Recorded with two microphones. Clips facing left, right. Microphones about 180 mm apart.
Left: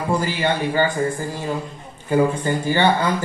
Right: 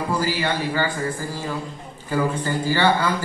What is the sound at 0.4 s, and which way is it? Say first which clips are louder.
Speech: left 3 dB; 20° left (ahead or behind).